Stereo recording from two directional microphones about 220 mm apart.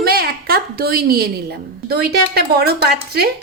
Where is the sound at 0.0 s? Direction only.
45° right (ahead or behind).